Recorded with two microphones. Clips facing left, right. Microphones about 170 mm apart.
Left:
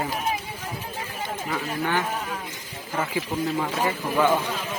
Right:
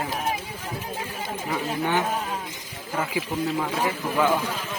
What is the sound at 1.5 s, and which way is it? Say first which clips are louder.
Speech: right 2 dB; 20° right (ahead or behind).